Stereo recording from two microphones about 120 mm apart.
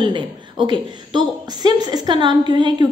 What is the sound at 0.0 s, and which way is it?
A woman's voice, 40° right (ahead or behind).